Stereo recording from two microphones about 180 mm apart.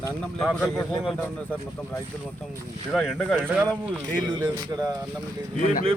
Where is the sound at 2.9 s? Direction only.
Centre (ahead or behind).